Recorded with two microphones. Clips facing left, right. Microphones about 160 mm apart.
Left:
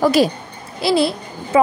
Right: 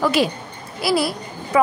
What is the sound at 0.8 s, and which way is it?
Speech, 25° left (ahead or behind).